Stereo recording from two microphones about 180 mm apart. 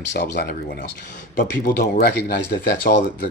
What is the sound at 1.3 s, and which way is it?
Speech, 50° left (ahead or behind).